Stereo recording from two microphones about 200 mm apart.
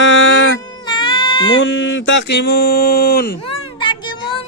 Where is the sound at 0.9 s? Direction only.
25° left (ahead or behind).